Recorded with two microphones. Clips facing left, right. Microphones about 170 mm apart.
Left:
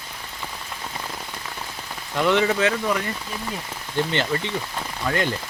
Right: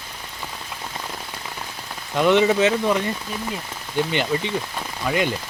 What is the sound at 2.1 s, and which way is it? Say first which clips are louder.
Speech: right 3 dB; 15° right (ahead or behind).